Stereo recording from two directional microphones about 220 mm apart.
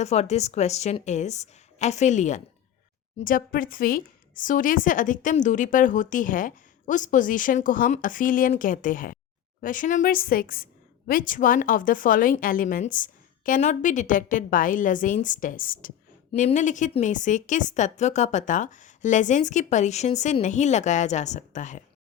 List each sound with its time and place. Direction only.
0.0 s a woman's voice: 30° left (ahead or behind)